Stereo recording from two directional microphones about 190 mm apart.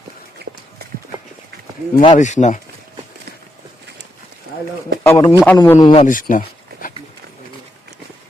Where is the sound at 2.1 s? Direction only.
40° left (ahead or behind).